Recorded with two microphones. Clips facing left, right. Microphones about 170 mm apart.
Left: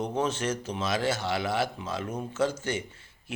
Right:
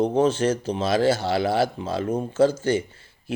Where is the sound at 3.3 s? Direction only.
30° right (ahead or behind).